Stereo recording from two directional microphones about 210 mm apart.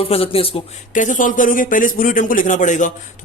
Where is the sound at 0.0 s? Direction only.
25° left (ahead or behind).